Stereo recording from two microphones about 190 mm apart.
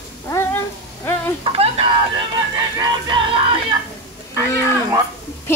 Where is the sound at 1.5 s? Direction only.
30° right (ahead or behind).